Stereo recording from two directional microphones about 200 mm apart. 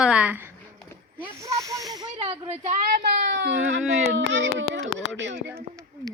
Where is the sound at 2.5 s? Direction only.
40° right (ahead or behind); by 4.5 s 65° right (ahead or behind).